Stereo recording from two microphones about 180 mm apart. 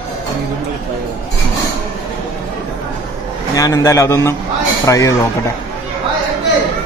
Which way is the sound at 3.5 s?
20° left (ahead or behind).